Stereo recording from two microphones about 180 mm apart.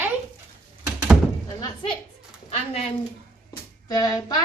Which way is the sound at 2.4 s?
35° left (ahead or behind).